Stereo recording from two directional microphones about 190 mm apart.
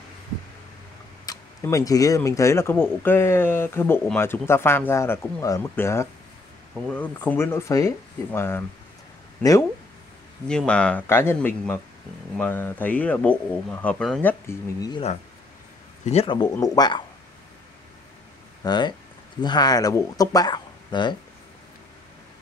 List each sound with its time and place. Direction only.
1.2 s speech: 20° left (ahead or behind)
10.5 s speech: 5° left (ahead or behind)
14.5 s speech: 20° left (ahead or behind)
16.1 s speech: 30° left (ahead or behind)
18.6 s speech: 20° left (ahead or behind)